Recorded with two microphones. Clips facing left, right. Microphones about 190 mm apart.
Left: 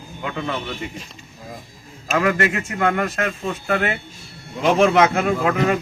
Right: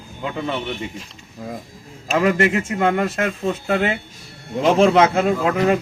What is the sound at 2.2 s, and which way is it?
Speech, 25° right (ahead or behind).